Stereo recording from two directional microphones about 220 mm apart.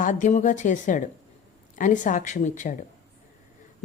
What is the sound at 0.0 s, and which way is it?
Speech, 35° left (ahead or behind).